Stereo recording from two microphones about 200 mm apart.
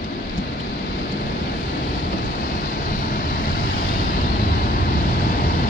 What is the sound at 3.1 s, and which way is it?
Vehicle, 45° left (ahead or behind).